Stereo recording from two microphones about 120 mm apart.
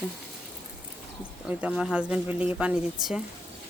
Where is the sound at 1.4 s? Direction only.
10° right (ahead or behind).